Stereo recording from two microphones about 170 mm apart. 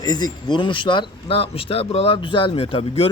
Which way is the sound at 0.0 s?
25° left (ahead or behind).